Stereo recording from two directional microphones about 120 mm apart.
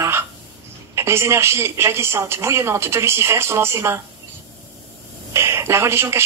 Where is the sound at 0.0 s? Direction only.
20° right (ahead or behind).